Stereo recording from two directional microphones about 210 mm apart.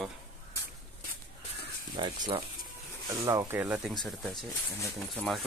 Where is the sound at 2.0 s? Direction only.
20° right (ahead or behind).